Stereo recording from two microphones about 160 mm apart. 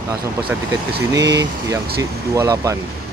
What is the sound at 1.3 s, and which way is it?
Speech, 25° right (ahead or behind).